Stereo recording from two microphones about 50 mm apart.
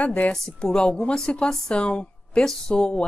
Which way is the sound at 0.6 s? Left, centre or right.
Centre.